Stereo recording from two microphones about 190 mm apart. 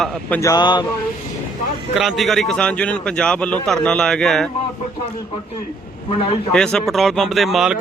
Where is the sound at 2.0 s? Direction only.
Centre (ahead or behind).